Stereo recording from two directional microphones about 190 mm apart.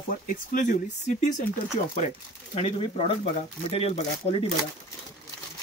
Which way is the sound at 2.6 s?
30° left (ahead or behind).